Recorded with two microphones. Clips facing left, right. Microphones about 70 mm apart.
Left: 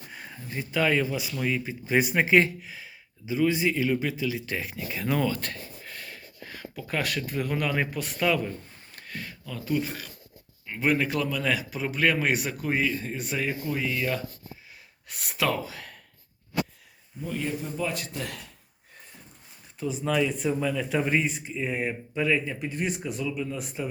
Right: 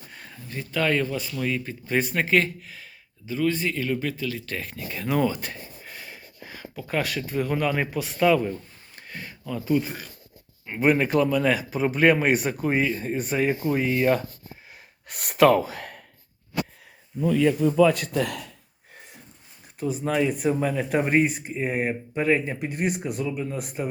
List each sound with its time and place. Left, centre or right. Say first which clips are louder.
0.1 s speech: even; centre
5.2 s speech: right 3 dB; centre
9.0 s a sound: even; centre
9.5 s speech: right 4 dB; centre
13.7 s speech: right 8 dB; right
15.0 s speech: right 10 dB; right
17.2 s a man's voice: right 11 dB; right
20.1 s speech: right 2 dB; right
21.5 s speech: right 4 dB; right
22.7 s speech: right 4 dB; right